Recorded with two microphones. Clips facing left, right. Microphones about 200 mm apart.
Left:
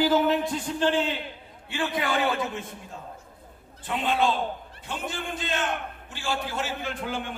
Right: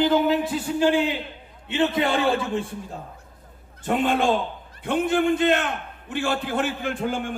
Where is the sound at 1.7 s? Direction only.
25° right (ahead or behind).